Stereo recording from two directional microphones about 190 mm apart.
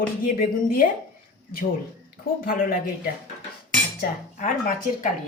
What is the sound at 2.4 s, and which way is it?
Speech, 45° left (ahead or behind).